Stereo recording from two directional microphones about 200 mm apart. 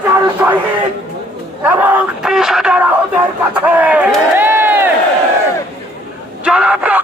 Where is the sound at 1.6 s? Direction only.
10° right (ahead or behind).